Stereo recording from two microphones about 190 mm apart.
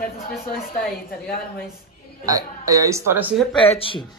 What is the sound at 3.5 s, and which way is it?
Speech, 30° left (ahead or behind).